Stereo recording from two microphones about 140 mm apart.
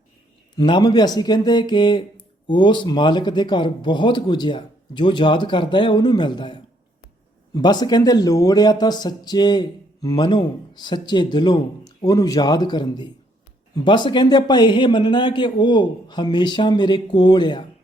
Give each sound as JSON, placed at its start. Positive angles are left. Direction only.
{"t": 0.5, "sound": "speech", "side_deg": 30}